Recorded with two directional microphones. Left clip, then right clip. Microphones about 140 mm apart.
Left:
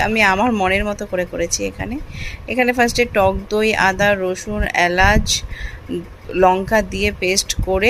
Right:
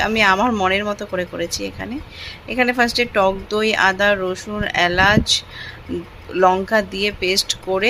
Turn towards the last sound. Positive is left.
turn(degrees=20)  # may be behind; listen again after turning